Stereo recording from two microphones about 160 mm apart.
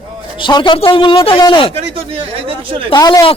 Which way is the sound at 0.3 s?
30° left (ahead or behind).